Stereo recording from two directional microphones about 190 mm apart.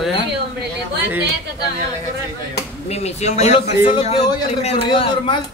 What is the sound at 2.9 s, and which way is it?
A man's voice, 35° left (ahead or behind).